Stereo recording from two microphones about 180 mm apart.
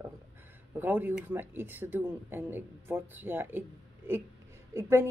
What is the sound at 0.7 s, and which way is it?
Speech, 10° right (ahead or behind).